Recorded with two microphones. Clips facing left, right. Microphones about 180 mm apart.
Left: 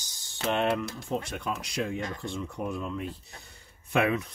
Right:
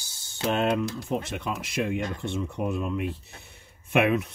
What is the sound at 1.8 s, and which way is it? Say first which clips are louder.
Speech: right 5 dB; 20° right (ahead or behind).